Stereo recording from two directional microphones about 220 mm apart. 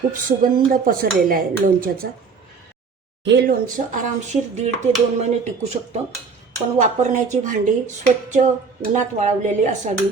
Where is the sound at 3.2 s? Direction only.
45° right (ahead or behind).